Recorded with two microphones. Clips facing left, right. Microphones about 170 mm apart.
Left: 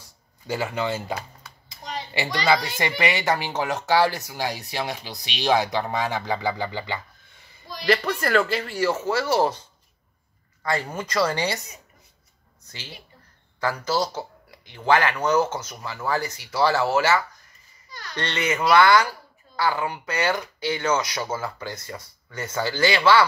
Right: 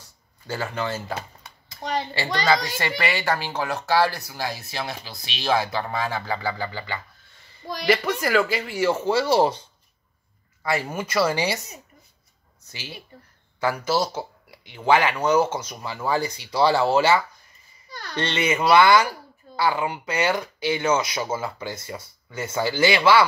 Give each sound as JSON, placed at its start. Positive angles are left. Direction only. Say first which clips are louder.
{"t": 0.5, "sound": "speech", "louder": "left 2 dB", "side_deg": 15}
{"t": 1.8, "sound": "hands", "louder": "right 7 dB", "side_deg": -75}
{"t": 2.3, "sound": "speech", "louder": "even", "side_deg": 15}
{"t": 7.9, "sound": "speech", "louder": "even", "side_deg": -5}
{"t": 8.8, "sound": "speech", "louder": "right 3 dB", "side_deg": -15}
{"t": 10.6, "sound": "speech", "louder": "right 1 dB", "side_deg": -5}
{"t": 12.6, "sound": "a child's voice", "louder": "right 3 dB", "side_deg": -10}
{"t": 18.4, "sound": "speech", "louder": "right 1 dB", "side_deg": -10}